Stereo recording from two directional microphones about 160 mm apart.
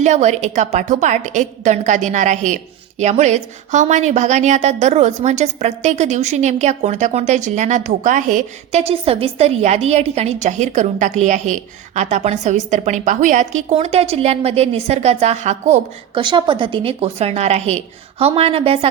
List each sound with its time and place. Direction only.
0.0 s a woman's voice: 45° right (ahead or behind)
16.1 s a woman's voice: 30° right (ahead or behind)